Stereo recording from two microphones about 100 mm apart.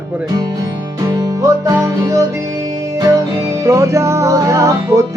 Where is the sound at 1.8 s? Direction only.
30° right (ahead or behind).